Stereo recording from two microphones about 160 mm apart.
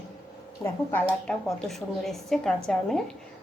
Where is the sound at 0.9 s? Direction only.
10° left (ahead or behind).